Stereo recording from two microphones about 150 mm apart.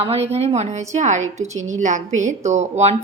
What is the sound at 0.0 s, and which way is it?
A woman's voice, 40° right (ahead or behind).